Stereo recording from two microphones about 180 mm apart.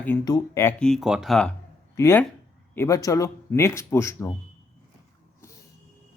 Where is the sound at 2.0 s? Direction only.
15° left (ahead or behind).